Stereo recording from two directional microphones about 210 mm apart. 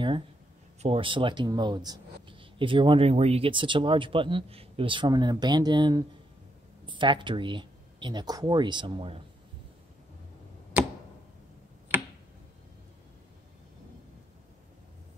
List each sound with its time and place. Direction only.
0.8 s speech: 25° right (ahead or behind)
11.9 s tick-tock: 10° right (ahead or behind)